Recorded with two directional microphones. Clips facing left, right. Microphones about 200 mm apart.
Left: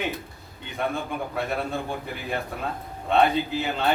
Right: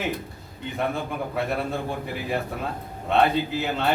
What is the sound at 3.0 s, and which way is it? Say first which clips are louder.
Speech: even; centre (ahead or behind).